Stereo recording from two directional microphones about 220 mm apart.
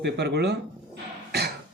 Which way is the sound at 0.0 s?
50° right (ahead or behind).